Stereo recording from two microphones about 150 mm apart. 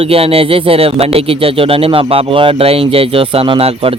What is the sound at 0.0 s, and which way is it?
Speech, 40° right (ahead or behind).